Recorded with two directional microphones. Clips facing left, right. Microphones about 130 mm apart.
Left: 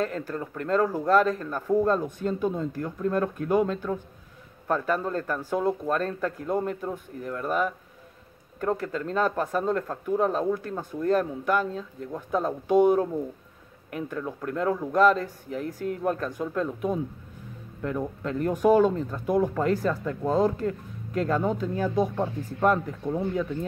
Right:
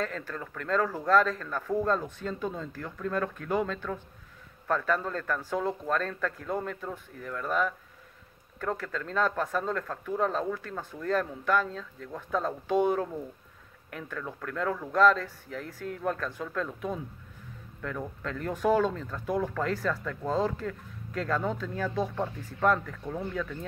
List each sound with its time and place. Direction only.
0.3 s speech: 20° left (ahead or behind)